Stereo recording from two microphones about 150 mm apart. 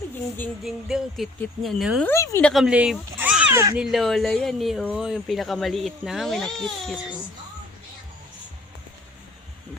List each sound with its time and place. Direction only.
0.6 s speech: centre (ahead or behind)
2.0 s a woman's voice: 15° left (ahead or behind)
2.4 s speech: centre (ahead or behind)
3.5 s speech: 20° right (ahead or behind)
3.8 s speech: centre (ahead or behind)